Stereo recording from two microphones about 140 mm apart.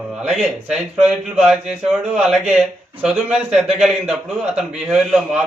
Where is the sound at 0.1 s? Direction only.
5° right (ahead or behind).